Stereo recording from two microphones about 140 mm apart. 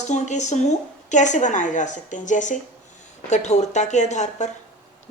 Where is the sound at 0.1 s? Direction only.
55° left (ahead or behind).